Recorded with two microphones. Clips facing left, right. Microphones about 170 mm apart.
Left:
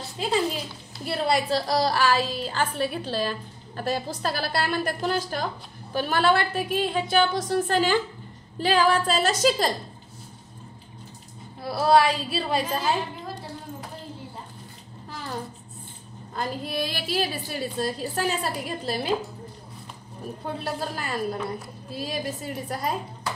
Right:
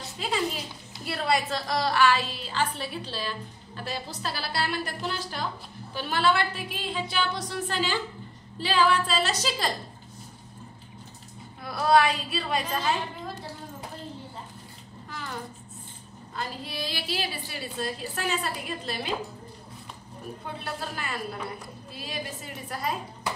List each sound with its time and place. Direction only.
1.0 s a woman's voice: 30° left (ahead or behind); by 9.7 s 45° left (ahead or behind)
11.6 s a woman's voice: 35° left (ahead or behind)
15.0 s a sound: 35° left (ahead or behind)
16.3 s a woman's voice: 55° left (ahead or behind)
20.4 s a woman's voice: 40° left (ahead or behind)